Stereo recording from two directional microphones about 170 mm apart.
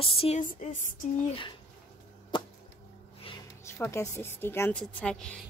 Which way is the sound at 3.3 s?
30° left (ahead or behind).